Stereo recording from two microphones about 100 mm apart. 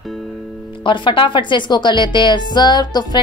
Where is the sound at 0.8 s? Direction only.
55° left (ahead or behind).